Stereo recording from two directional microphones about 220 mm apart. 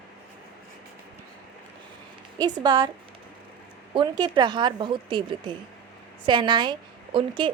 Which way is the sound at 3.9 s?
20° right (ahead or behind).